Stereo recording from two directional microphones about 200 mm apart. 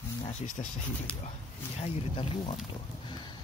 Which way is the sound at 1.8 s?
25° left (ahead or behind).